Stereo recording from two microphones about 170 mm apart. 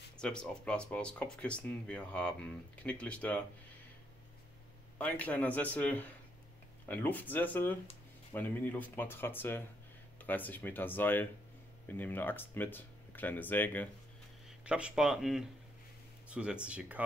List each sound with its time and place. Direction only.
0.2 s speech: 5° left (ahead or behind)
4.9 s speech: 10° left (ahead or behind)
14.6 s speech: 5° right (ahead or behind)